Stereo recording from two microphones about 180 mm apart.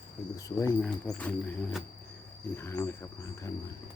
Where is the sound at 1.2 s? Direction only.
5° left (ahead or behind).